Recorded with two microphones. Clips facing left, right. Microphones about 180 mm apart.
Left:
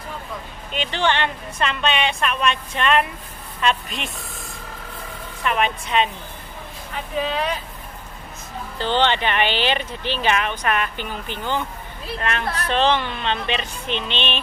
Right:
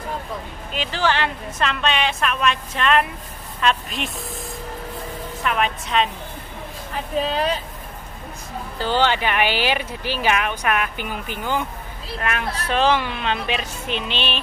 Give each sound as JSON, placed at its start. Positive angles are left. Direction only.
{"t": 0.7, "sound": "speech", "side_deg": 0}
{"t": 7.2, "sound": "speech", "side_deg": -35}
{"t": 8.7, "sound": "speech", "side_deg": -5}